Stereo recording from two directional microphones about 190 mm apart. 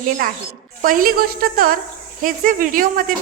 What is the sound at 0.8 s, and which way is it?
A woman's voice, 45° right (ahead or behind).